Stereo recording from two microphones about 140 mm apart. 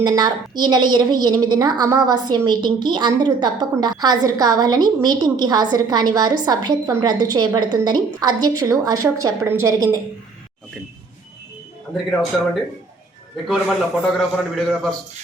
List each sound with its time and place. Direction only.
0.0 s a woman's voice: 30° right (ahead or behind)
11.9 s speech: 10° left (ahead or behind)
13.3 s a man's voice: centre (ahead or behind)